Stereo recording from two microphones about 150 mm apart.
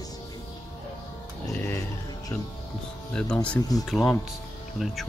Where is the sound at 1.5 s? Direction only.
15° left (ahead or behind).